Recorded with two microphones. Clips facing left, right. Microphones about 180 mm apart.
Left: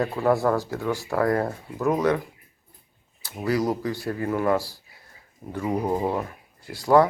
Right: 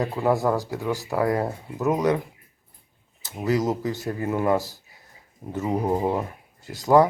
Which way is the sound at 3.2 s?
20° right (ahead or behind).